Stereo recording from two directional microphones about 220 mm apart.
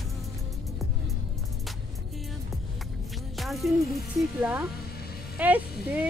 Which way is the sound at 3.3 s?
Centre (ahead or behind).